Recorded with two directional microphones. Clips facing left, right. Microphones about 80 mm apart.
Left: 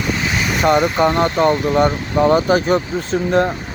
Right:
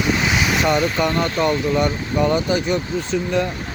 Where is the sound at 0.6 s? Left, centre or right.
Left.